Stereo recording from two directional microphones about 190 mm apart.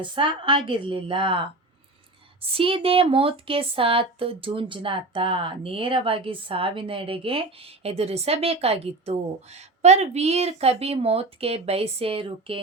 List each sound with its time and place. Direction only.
0.0 s speech: 25° right (ahead or behind)